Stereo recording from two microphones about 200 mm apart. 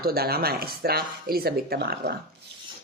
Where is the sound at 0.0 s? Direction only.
50° right (ahead or behind).